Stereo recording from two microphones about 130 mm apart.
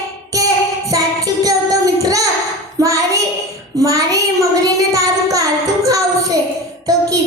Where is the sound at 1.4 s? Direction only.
25° right (ahead or behind).